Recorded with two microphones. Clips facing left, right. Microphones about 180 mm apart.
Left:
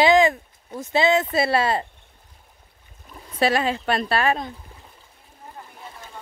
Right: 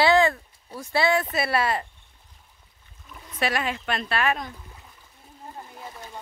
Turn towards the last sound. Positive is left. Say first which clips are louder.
# left 4 dB
turn(degrees=30)  # may be behind; listen again after turning